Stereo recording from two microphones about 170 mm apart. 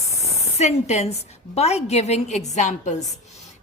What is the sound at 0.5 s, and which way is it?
A woman's voice, 40° left (ahead or behind).